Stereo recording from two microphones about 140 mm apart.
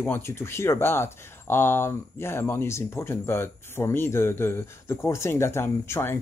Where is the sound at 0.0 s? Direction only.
15° left (ahead or behind).